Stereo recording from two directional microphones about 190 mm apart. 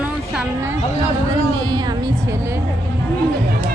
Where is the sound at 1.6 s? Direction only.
20° right (ahead or behind).